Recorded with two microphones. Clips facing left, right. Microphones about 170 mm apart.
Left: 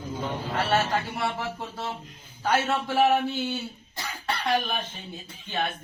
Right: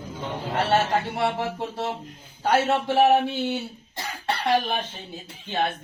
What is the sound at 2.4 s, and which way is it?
Speech, 25° right (ahead or behind).